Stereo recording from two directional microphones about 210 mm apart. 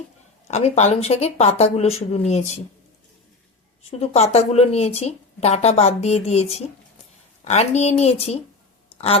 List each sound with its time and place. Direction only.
0.4 s speech: 30° left (ahead or behind)
4.0 s speech: 30° left (ahead or behind)
8.9 s a sound: 30° left (ahead or behind)